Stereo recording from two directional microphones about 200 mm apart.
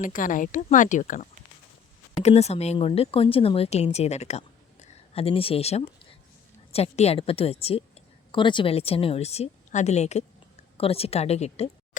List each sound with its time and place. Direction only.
0.0 s a woman's voice: 40° left (ahead or behind)